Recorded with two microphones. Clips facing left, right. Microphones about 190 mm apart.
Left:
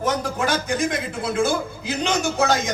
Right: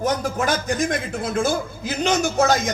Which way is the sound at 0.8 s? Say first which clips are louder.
Right 1 dB; 45° right (ahead or behind).